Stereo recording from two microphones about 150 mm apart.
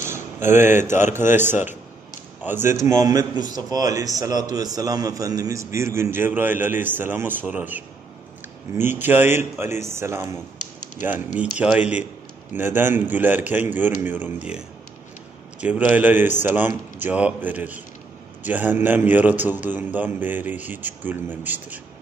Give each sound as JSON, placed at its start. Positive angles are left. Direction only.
{"t": 0.5, "sound": "a man's voice", "side_deg": -15}
{"t": 15.6, "sound": "a man's voice", "side_deg": -10}